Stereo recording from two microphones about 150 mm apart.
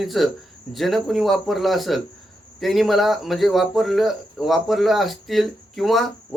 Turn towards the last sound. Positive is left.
turn(degrees=0)  # may be behind; listen again after turning